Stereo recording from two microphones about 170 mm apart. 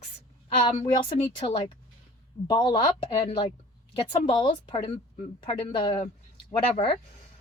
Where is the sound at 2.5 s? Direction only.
25° left (ahead or behind).